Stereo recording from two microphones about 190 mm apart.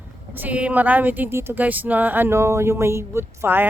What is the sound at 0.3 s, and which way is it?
A woman's voice, 10° right (ahead or behind).